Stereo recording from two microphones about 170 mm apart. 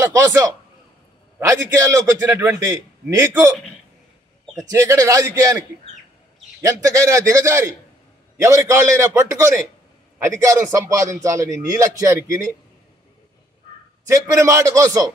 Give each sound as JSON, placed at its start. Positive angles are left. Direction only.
{"t": 0.0, "sound": "a man's voice", "side_deg": -15}
{"t": 4.8, "sound": "a man's voice", "side_deg": -20}
{"t": 6.6, "sound": "a man's voice", "side_deg": -20}
{"t": 14.0, "sound": "a man's voice", "side_deg": -15}